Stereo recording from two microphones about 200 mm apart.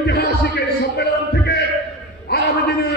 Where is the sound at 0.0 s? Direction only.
55° left (ahead or behind).